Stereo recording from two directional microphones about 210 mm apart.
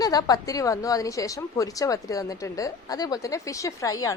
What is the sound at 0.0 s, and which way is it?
A woman's voice, 20° left (ahead or behind).